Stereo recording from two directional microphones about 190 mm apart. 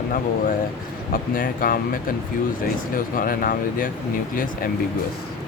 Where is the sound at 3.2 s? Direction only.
45° left (ahead or behind).